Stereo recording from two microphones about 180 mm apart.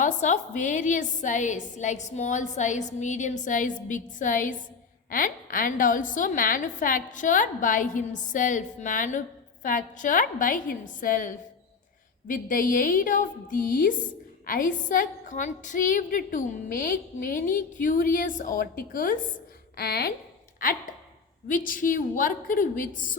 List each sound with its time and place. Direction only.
0.0 s a woman's voice: 45° left (ahead or behind)